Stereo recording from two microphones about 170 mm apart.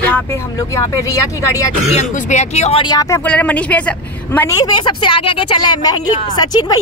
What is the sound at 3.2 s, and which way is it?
A woman's voice, 10° left (ahead or behind).